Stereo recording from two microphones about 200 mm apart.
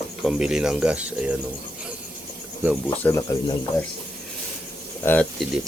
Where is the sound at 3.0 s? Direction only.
15° left (ahead or behind).